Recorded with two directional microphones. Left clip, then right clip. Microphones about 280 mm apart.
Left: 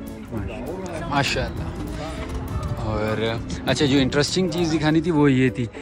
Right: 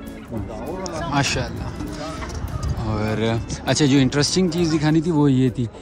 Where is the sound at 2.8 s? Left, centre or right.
Centre.